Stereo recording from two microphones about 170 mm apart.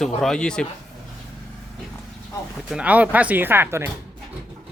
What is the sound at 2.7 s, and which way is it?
Speech, 5° right (ahead or behind).